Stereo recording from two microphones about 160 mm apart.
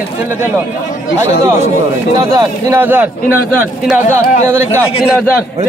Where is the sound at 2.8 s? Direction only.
10° right (ahead or behind).